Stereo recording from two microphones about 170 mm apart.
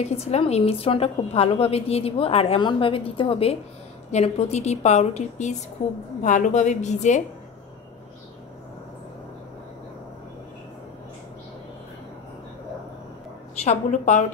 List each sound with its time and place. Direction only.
0.0 s a woman's voice: 40° left (ahead or behind)
13.6 s a woman's voice: 45° left (ahead or behind)